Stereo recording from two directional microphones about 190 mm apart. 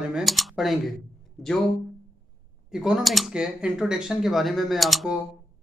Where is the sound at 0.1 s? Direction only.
Centre (ahead or behind).